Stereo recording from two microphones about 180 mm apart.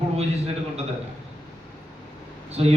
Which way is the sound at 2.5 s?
35° right (ahead or behind).